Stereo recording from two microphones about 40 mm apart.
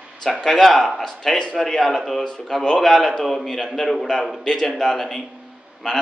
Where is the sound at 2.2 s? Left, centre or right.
Centre.